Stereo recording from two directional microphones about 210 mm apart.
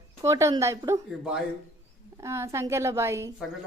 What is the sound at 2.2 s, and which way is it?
Speech, 15° right (ahead or behind).